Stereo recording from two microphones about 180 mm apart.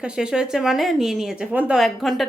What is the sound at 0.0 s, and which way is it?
Speech, 5° right (ahead or behind).